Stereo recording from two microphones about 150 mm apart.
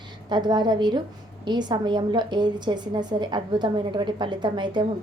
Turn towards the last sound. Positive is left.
turn(degrees=-30)  # may be behind; listen again after turning